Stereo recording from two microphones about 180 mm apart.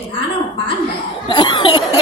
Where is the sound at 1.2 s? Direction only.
25° left (ahead or behind).